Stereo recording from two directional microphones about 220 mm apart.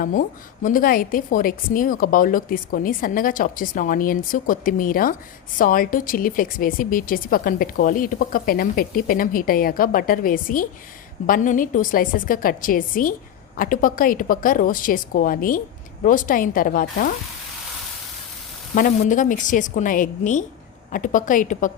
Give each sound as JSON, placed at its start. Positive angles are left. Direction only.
{"t": 0.0, "sound": "a woman's voice", "side_deg": 40}
{"t": 18.7, "sound": "a woman's voice", "side_deg": 40}